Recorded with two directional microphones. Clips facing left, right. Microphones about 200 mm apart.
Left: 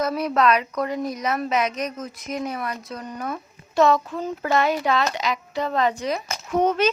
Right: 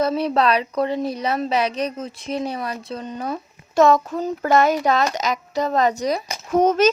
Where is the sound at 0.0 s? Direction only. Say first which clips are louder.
Right 2 dB; 30° right (ahead or behind).